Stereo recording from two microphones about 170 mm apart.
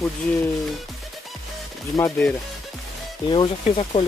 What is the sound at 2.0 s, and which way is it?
Speech, 15° left (ahead or behind).